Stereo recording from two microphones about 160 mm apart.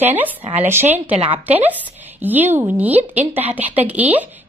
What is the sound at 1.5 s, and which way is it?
A woman's voice, 10° right (ahead or behind).